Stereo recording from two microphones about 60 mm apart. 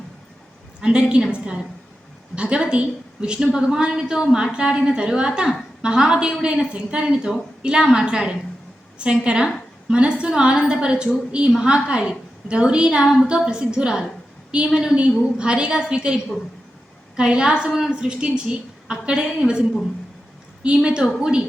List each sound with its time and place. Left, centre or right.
0.8 s a woman's voice: centre